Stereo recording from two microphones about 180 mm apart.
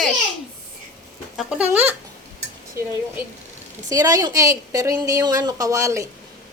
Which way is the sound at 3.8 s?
20° right (ahead or behind).